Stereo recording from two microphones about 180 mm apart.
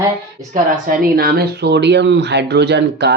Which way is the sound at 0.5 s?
55° right (ahead or behind).